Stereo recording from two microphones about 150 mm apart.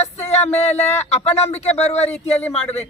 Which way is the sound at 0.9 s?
45° left (ahead or behind).